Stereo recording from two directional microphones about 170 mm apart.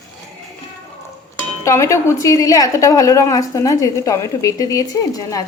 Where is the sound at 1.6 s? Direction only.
15° left (ahead or behind).